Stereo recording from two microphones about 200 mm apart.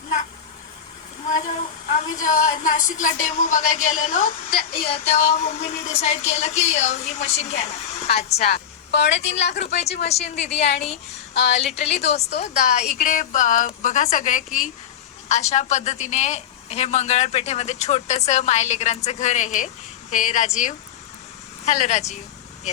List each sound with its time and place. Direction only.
2.2 s a woman's voice: 35° left (ahead or behind)
5.1 s a woman's voice: 30° left (ahead or behind)
8.5 s speech: 55° left (ahead or behind)
9.7 s a woman's voice: 30° left (ahead or behind)
11.3 s speech: 60° left (ahead or behind)
11.6 s a woman's voice: 30° left (ahead or behind)